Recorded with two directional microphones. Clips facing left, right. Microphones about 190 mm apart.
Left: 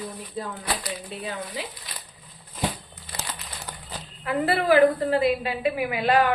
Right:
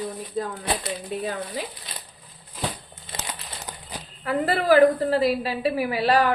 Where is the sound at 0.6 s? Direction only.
25° right (ahead or behind).